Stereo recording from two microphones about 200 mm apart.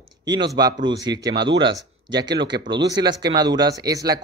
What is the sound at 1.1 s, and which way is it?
Speech, 60° right (ahead or behind).